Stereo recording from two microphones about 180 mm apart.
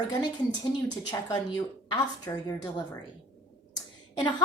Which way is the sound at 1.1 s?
15° left (ahead or behind).